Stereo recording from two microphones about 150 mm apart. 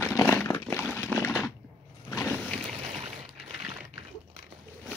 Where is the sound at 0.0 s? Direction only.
15° left (ahead or behind).